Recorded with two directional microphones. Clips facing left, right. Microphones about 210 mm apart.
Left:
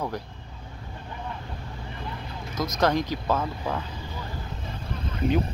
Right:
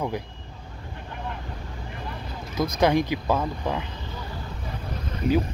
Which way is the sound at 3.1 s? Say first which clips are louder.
Right 2 dB; 10° right (ahead or behind).